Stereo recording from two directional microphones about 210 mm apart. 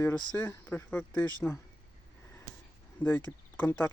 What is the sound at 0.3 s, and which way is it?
Speech, 10° left (ahead or behind).